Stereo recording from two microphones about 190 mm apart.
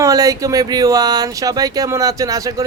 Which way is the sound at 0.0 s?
20° right (ahead or behind).